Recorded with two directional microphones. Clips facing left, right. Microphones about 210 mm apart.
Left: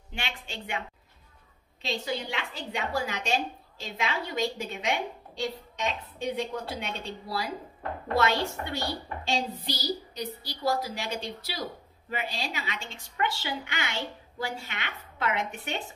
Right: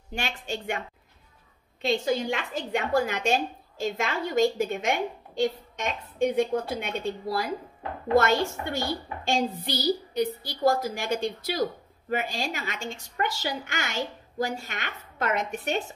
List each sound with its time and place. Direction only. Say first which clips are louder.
0.1 s a woman's voice: right 6 dB; 45° right (ahead or behind)